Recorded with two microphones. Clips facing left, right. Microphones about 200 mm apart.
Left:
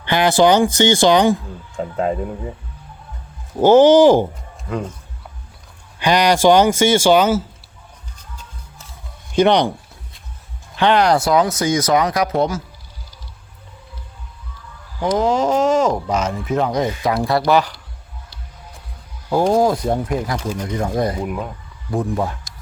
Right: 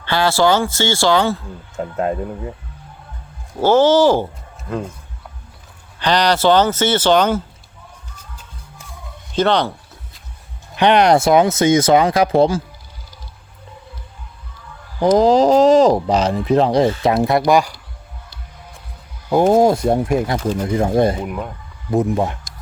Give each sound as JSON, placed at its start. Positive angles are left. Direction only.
{"t": 0.0, "sound": "speech", "side_deg": 15}
{"t": 1.7, "sound": "speech", "side_deg": -5}
{"t": 3.6, "sound": "speech", "side_deg": 15}
{"t": 4.7, "sound": "speech", "side_deg": -5}
{"t": 6.0, "sound": "speech", "side_deg": 10}
{"t": 9.3, "sound": "speech", "side_deg": 15}
{"t": 10.8, "sound": "speech", "side_deg": -20}
{"t": 15.1, "sound": "speech", "side_deg": -35}
{"t": 19.5, "sound": "speech", "side_deg": -25}
{"t": 21.2, "sound": "speech", "side_deg": 0}
{"t": 21.8, "sound": "speech", "side_deg": -25}